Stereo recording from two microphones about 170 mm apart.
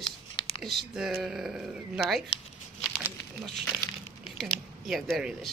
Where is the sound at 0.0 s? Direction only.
30° left (ahead or behind).